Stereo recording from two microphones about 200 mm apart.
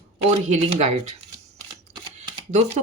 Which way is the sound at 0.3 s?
35° right (ahead or behind).